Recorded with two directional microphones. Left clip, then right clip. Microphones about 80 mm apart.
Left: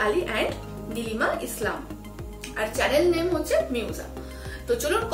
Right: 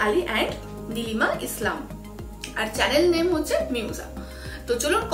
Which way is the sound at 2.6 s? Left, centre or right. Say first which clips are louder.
Right 1 dB; right.